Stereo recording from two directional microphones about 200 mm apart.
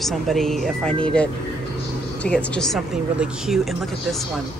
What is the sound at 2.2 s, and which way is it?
Speech, 5° left (ahead or behind).